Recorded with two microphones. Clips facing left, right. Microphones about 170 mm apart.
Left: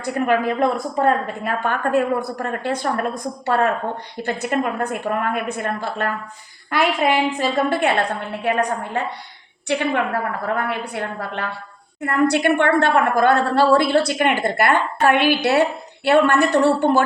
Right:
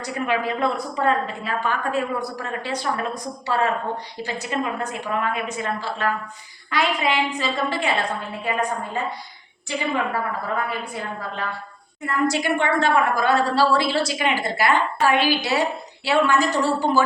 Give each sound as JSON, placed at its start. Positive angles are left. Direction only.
{"t": 0.0, "sound": "a woman's voice", "side_deg": 50}
{"t": 8.4, "sound": "a woman's voice", "side_deg": 70}